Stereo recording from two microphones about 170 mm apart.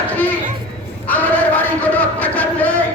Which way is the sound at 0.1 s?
10° left (ahead or behind).